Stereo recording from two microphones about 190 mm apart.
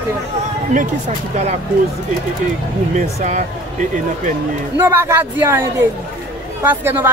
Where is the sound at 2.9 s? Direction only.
40° right (ahead or behind).